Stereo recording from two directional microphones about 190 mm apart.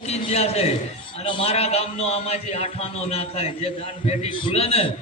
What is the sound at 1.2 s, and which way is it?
A man's voice, 30° left (ahead or behind).